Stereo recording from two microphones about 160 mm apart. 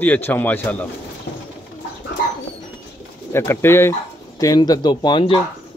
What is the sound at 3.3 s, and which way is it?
A man's voice, 15° left (ahead or behind).